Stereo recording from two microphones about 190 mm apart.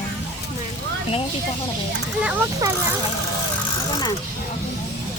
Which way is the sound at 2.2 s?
5° right (ahead or behind).